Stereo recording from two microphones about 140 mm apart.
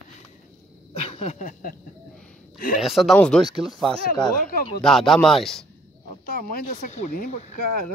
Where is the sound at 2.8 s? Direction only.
Centre (ahead or behind).